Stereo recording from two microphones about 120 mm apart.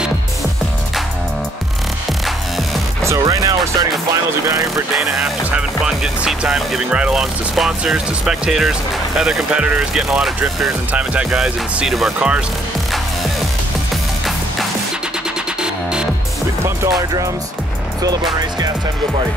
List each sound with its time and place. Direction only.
3.0 s music: 25° right (ahead or behind)
4.9 s speech: 5° right (ahead or behind)
15.6 s music: 5° right (ahead or behind)